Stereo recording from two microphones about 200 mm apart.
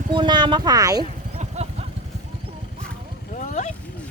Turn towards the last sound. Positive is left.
turn(degrees=35)  # may be behind; listen again after turning